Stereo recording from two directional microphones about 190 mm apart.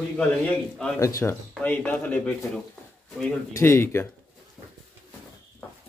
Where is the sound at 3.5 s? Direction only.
15° left (ahead or behind).